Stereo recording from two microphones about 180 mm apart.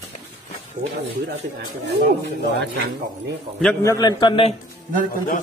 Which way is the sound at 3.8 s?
25° left (ahead or behind).